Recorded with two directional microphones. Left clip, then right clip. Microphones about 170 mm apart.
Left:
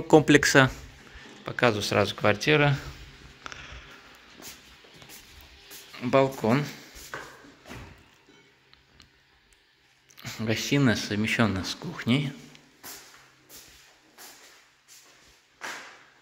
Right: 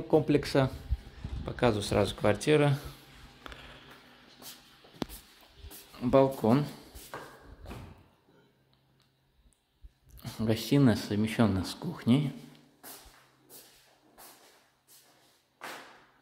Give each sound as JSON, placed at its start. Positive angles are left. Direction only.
{"t": 0.1, "sound": "speech", "side_deg": 10}
{"t": 1.4, "sound": "speech", "side_deg": -10}
{"t": 3.4, "sound": "music", "side_deg": -20}
{"t": 5.9, "sound": "speech", "side_deg": -15}
{"t": 10.1, "sound": "speech", "side_deg": -20}